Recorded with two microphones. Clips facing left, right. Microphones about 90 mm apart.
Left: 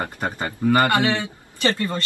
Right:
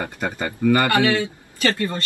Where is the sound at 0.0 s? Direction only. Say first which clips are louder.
Even; 25° left (ahead or behind).